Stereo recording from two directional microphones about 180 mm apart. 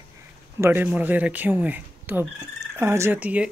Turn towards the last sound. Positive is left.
turn(degrees=-10)  # may be behind; listen again after turning